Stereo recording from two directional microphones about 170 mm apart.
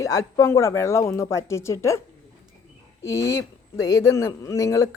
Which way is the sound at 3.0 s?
20° left (ahead or behind).